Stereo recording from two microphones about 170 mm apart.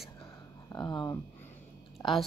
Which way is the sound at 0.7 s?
25° left (ahead or behind).